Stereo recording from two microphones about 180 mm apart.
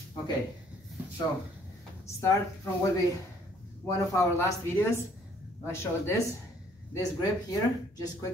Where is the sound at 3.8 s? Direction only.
15° left (ahead or behind).